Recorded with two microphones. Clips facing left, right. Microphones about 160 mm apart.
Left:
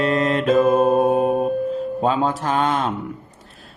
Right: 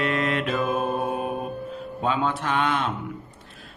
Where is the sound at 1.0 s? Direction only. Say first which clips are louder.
Left 10 dB; 40° left (ahead or behind).